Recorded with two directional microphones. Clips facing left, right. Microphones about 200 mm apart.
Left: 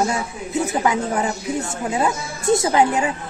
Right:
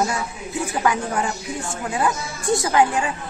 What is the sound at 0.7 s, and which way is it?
Speech, 20° left (ahead or behind).